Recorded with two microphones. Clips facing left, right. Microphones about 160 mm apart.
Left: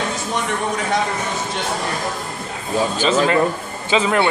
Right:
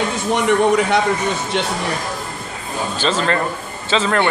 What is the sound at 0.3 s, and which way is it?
Speech, 65° right (ahead or behind).